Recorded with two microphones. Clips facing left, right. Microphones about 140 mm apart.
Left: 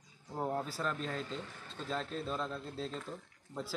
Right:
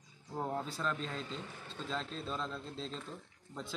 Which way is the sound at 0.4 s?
5° left (ahead or behind).